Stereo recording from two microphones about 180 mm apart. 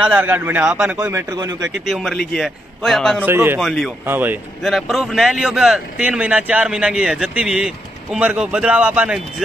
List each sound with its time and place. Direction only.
0.0 s a man's voice: 10° right (ahead or behind)
1.0 s a man's voice: 15° right (ahead or behind)
1.9 s a man's voice: centre (ahead or behind)
3.3 s a man's voice: 10° right (ahead or behind)
3.6 s a man's voice: centre (ahead or behind)
4.0 s a man's voice: 10° right (ahead or behind)
4.6 s a man's voice: centre (ahead or behind)